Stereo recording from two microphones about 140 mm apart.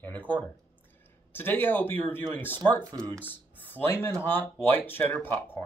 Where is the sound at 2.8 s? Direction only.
25° right (ahead or behind).